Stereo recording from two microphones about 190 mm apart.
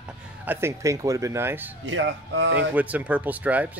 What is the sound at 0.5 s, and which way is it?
Speech, 15° right (ahead or behind).